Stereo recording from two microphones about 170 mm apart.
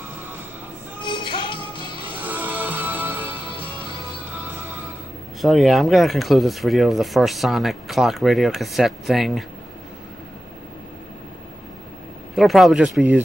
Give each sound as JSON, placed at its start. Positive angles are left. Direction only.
{"t": 1.0, "sound": "music", "side_deg": 30}
{"t": 2.1, "sound": "music", "side_deg": -10}
{"t": 5.4, "sound": "speech", "side_deg": 0}
{"t": 12.4, "sound": "speech", "side_deg": 0}